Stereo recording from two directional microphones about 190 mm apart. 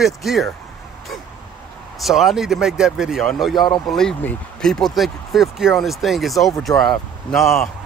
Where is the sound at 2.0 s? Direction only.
Centre (ahead or behind).